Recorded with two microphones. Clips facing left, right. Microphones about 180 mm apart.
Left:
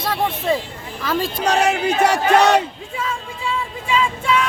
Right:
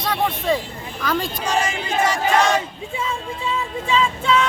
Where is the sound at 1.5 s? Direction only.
65° left (ahead or behind).